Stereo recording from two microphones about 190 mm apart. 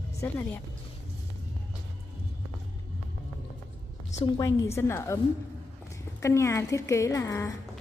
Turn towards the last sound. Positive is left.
turn(degrees=15)  # may be behind; listen again after turning